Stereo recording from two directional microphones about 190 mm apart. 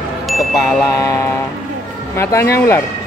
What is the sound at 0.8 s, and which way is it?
A man's voice, 15° left (ahead or behind).